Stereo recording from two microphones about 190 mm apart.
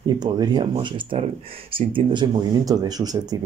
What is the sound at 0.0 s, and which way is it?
Speech, 20° right (ahead or behind).